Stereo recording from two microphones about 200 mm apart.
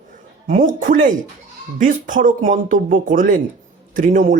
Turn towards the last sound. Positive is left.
turn(degrees=-40)  # may be behind; listen again after turning